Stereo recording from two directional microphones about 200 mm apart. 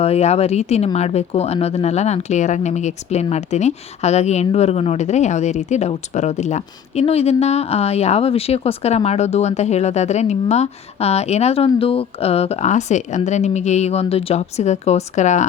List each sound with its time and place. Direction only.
0.0 s speech: 30° left (ahead or behind)